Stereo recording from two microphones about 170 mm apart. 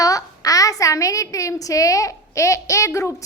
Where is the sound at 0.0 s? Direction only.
20° left (ahead or behind).